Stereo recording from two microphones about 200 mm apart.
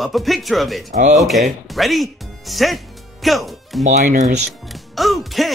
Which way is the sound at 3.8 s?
40° right (ahead or behind).